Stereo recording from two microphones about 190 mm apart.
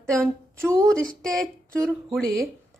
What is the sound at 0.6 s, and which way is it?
Speech, 15° right (ahead or behind).